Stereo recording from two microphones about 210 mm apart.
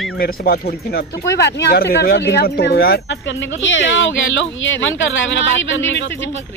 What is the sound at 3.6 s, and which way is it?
Speech, 60° left (ahead or behind).